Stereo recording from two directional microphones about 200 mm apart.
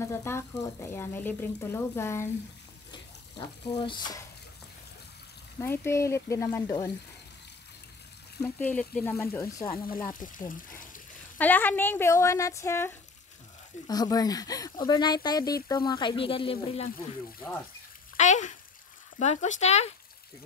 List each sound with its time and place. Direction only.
0.0 s speech: 15° left (ahead or behind)
2.9 s speech: 25° left (ahead or behind)
5.6 s speech: 15° left (ahead or behind)
8.4 s speech: 10° left (ahead or behind)
10.0 s speech: 40° left (ahead or behind)
11.3 s speech: 10° left (ahead or behind); by 16.9 s 30° left (ahead or behind)
18.1 s speech: 35° left (ahead or behind)